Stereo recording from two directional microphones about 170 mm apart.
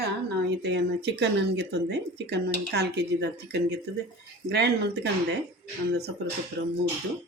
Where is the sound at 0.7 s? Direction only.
80° right.